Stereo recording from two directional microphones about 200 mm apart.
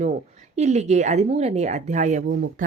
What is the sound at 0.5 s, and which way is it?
A woman's voice, 35° right (ahead or behind).